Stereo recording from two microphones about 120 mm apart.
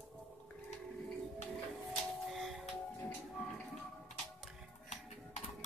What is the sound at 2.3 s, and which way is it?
Music, centre (ahead or behind).